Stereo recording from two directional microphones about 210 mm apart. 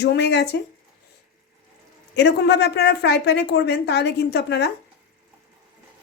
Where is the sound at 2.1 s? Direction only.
55° left (ahead or behind).